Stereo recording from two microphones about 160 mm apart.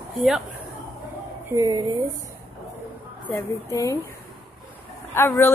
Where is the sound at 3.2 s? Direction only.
15° left (ahead or behind).